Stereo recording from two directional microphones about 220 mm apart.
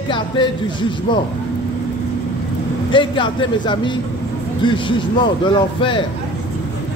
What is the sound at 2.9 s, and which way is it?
A man's voice, 20° left (ahead or behind).